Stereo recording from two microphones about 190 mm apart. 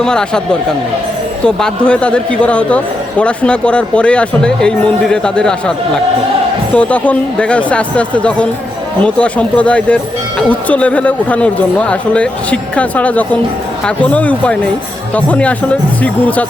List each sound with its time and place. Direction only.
0.0 s speech: 5° left (ahead or behind)
1.5 s speech: 5° left (ahead or behind)
6.7 s speech: 5° left (ahead or behind)